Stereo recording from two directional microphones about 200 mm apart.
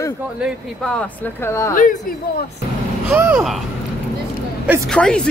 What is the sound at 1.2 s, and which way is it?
Speech, 10° left (ahead or behind).